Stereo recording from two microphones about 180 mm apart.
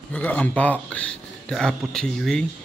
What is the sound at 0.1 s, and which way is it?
Speech, 10° left (ahead or behind).